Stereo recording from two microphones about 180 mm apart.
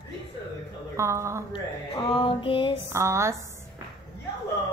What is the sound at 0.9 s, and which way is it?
Speech, 15° right (ahead or behind).